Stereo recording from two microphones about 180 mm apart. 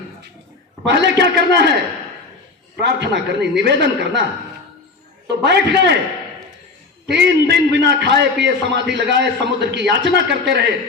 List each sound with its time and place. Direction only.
0.9 s a man's voice: 70° right (ahead or behind)
2.7 s a man's voice: 70° right (ahead or behind)
5.3 s a man's voice: 70° right (ahead or behind)
7.1 s a man's voice: 70° right (ahead or behind)